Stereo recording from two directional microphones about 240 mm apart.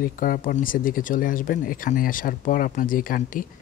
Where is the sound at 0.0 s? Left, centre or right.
Left.